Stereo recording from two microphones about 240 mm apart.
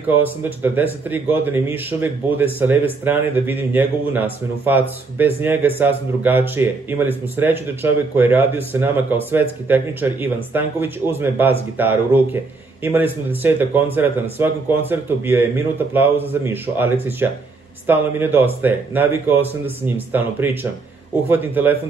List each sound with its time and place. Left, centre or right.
0.1 s a man's voice: centre